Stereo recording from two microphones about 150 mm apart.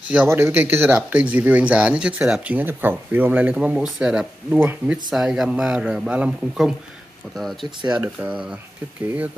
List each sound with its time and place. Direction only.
0.1 s a man's voice: 10° right (ahead or behind)
8.2 s speech: 5° right (ahead or behind)